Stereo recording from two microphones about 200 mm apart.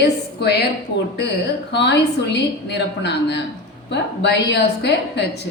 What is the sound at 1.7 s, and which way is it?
A woman's voice, 60° left (ahead or behind).